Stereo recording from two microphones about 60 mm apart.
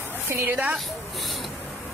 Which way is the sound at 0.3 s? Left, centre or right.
Right.